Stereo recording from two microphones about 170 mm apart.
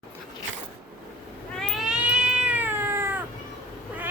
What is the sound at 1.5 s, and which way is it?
Cat, centre (ahead or behind).